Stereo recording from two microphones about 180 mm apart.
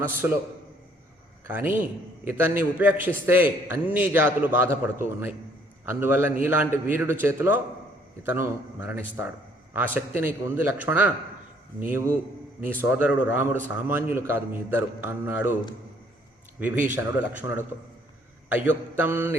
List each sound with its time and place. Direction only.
0.0 s a man's voice: 10° right (ahead or behind)
1.5 s a man's voice: 10° right (ahead or behind)
16.6 s a man's voice: 10° right (ahead or behind)